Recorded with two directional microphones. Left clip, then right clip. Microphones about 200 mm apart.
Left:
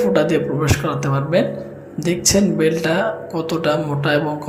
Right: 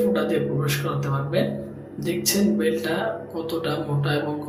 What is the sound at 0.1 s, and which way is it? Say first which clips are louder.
Speech: left 6 dB; 35° left (ahead or behind).